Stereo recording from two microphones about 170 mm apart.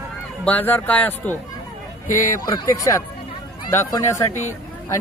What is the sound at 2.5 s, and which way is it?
A man's voice, 20° left (ahead or behind).